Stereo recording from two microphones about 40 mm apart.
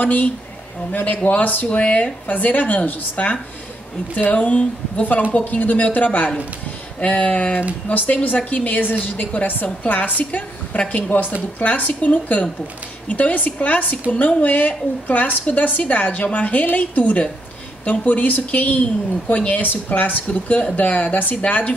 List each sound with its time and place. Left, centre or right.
0.0 s a woman's voice: left
1.8 s a woman's voice: left
20.4 s speech: left